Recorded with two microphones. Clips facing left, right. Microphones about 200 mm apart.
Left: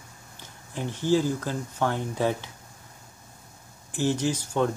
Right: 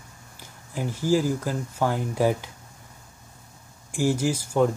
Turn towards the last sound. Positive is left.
turn(degrees=-10)  # may be behind; listen again after turning